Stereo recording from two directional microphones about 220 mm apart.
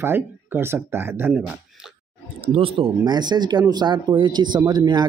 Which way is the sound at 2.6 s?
20° right (ahead or behind).